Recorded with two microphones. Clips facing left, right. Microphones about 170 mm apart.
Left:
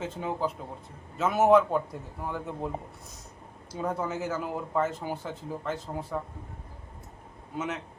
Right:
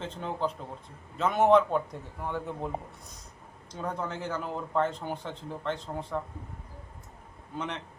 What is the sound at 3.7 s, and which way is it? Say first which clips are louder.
Speech: left 3 dB; 5° left (ahead or behind).